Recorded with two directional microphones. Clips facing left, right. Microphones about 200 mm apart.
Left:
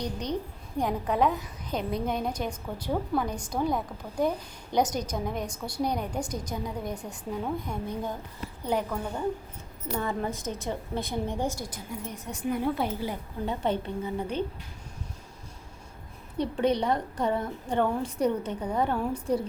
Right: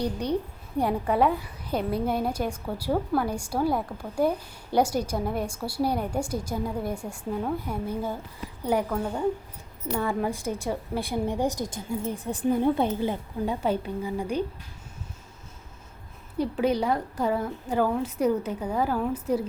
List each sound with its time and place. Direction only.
0.0 s a woman's voice: 10° right (ahead or behind)
10.0 s a woman's voice: 15° right (ahead or behind)
11.7 s a woman's voice: 30° right (ahead or behind)
13.4 s a woman's voice: 10° right (ahead or behind)
16.4 s a woman's voice: 5° right (ahead or behind)